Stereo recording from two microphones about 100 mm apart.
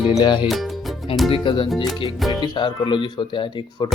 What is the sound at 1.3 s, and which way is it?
Speech, 60° left (ahead or behind).